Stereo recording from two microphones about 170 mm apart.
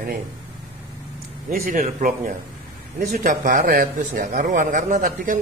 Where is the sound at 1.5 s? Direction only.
60° right (ahead or behind).